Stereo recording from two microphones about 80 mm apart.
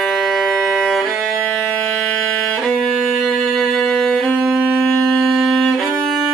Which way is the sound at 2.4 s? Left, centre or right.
Centre.